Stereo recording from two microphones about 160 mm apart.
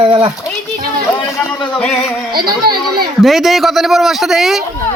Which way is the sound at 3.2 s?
Centre (ahead or behind).